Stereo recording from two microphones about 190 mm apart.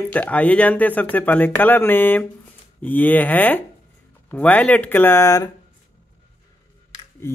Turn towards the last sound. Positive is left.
turn(degrees=15)  # may be behind; listen again after turning